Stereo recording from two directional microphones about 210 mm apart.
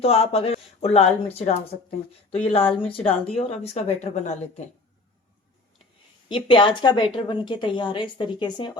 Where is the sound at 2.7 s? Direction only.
25° left (ahead or behind).